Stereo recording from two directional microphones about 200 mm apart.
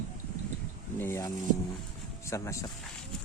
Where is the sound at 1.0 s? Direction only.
15° left (ahead or behind).